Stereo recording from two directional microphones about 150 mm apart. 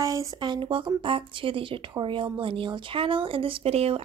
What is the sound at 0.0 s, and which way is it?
Speech, 20° right (ahead or behind).